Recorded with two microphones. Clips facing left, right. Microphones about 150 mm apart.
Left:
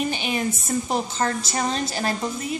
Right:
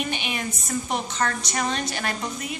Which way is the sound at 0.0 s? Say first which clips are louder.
Left 4 dB; 35° left (ahead or behind).